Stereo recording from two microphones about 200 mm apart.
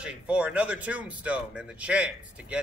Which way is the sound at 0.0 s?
5° right (ahead or behind).